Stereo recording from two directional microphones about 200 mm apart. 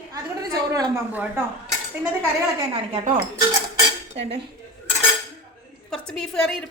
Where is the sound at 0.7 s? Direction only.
10° right (ahead or behind).